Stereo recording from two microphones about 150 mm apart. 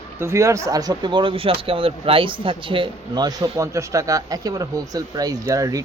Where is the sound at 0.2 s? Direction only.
20° right (ahead or behind).